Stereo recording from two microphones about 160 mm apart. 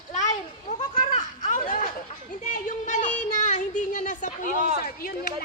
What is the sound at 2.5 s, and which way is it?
Child singing, 55° left (ahead or behind).